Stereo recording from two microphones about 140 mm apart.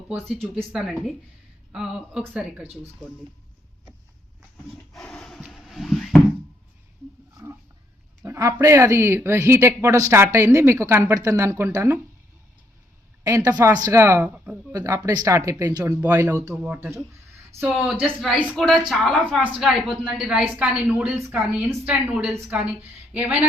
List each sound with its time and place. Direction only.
0.7 s speech: centre (ahead or behind)
4.7 s a sound: 5° left (ahead or behind)
8.2 s speech: 25° right (ahead or behind)
13.2 s a woman's voice: 20° right (ahead or behind)
14.7 s speech: 25° right (ahead or behind)
17.7 s speech: 5° right (ahead or behind)
18.5 s speech: 5° left (ahead or behind)
19.1 s a woman's voice: 10° right (ahead or behind)